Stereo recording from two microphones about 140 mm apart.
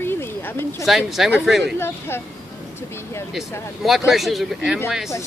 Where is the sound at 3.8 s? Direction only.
Centre (ahead or behind).